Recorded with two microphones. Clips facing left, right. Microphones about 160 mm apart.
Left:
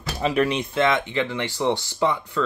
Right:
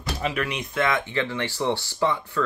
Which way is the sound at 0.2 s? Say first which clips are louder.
Left 8 dB; 30° left (ahead or behind).